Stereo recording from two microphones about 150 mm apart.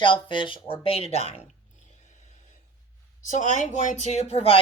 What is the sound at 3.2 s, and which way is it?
Speech, 55° left (ahead or behind).